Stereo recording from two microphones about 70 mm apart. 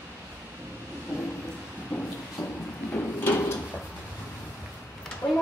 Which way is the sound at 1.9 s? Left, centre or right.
Centre.